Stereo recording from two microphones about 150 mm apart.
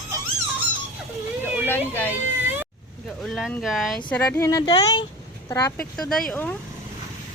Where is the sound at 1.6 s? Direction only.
15° left (ahead or behind).